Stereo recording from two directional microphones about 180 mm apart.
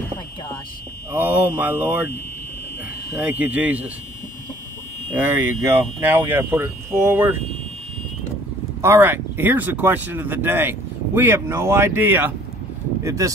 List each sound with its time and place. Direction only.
1.1 s speech: 10° right (ahead or behind)
3.2 s speech: 10° right (ahead or behind)
5.1 s speech: 10° right (ahead or behind)
8.8 s speech: 10° right (ahead or behind)